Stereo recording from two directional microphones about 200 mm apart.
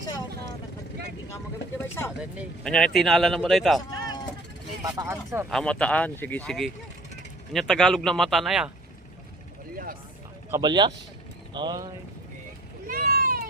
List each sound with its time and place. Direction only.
2.4 s speech: 5° left (ahead or behind)
3.9 s a sound: 20° left (ahead or behind)
4.8 s speech: 20° right (ahead or behind)
5.5 s speech: 5° left (ahead or behind)
9.7 s a sound: 45° right (ahead or behind)
10.5 s speech: 20° right (ahead or behind)
12.9 s vehicle: 45° right (ahead or behind)